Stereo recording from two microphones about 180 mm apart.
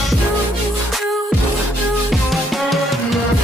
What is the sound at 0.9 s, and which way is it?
Music, centre (ahead or behind).